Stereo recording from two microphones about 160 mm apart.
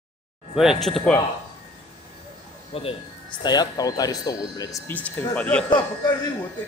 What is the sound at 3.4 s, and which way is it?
Speech, 25° left (ahead or behind).